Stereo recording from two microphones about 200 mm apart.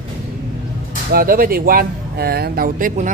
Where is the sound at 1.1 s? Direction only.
45° right (ahead or behind).